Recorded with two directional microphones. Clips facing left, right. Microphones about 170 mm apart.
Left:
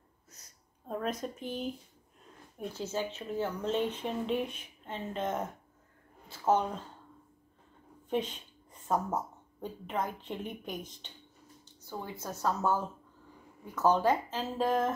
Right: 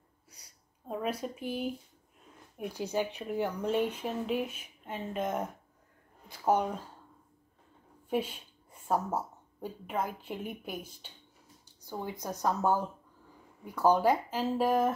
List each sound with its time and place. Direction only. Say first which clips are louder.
0.3 s a sound: left 1 dB; 10° right (ahead or behind)
2.5 s speech: right 3 dB; 15° right (ahead or behind)
8.1 s speech: right 1 dB; 10° right (ahead or behind)